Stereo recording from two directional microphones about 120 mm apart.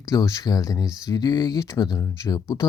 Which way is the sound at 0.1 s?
30° left (ahead or behind).